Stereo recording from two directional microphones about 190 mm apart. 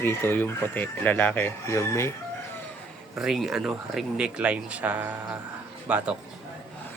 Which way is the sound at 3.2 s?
Centre (ahead or behind).